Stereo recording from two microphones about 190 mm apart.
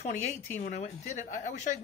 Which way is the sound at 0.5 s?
35° left (ahead or behind).